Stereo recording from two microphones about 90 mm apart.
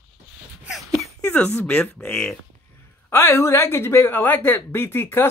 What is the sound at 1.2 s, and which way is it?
Speech, 20° left (ahead or behind).